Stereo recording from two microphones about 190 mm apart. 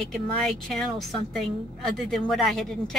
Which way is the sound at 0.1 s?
Centre (ahead or behind).